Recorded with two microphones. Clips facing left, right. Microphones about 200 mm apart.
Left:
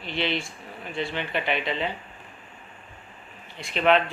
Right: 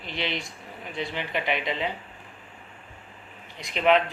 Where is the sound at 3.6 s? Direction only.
15° right (ahead or behind).